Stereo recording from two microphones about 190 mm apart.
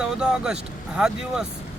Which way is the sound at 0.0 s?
5° right (ahead or behind).